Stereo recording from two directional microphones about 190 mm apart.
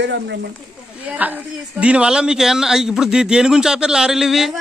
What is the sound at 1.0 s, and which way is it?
Speech, 10° right (ahead or behind).